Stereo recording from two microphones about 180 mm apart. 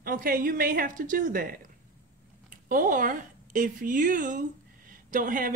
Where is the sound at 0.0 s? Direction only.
50° right (ahead or behind).